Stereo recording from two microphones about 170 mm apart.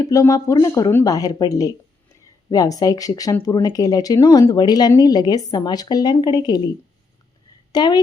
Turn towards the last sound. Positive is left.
turn(degrees=25)  # may be behind; listen again after turning